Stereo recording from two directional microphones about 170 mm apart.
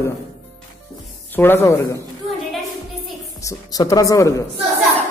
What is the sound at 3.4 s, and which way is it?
Speech, 20° left (ahead or behind).